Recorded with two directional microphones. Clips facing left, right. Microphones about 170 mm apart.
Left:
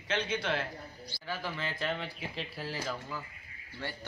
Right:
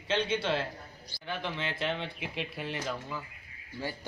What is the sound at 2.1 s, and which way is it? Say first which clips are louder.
Speech: right 2 dB; 65° right (ahead or behind).